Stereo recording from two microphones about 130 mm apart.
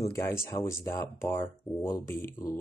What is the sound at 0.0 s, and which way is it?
Speech, 20° left (ahead or behind).